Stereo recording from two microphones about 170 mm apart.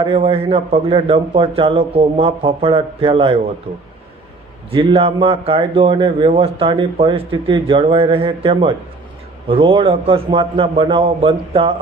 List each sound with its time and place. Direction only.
0.0 s a man's voice: 30° right (ahead or behind)
4.7 s a man's voice: 30° right (ahead or behind)